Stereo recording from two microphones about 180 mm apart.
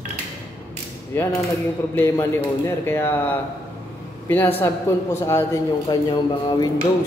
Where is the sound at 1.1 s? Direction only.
10° left (ahead or behind).